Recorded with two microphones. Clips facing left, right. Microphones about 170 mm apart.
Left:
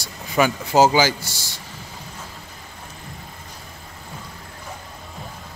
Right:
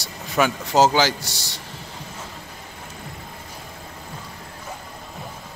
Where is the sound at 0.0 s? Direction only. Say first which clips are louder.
Left 1 dB; centre (ahead or behind).